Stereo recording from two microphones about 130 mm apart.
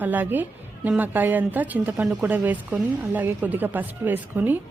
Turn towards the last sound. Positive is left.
turn(degrees=-15)  # may be behind; listen again after turning